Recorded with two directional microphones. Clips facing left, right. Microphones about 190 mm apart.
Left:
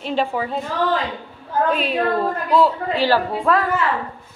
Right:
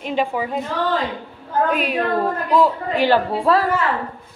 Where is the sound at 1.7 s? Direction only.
10° right (ahead or behind); by 3.6 s 30° right (ahead or behind).